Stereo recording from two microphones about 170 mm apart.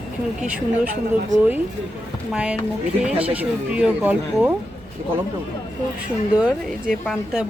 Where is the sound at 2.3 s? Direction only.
5° right (ahead or behind).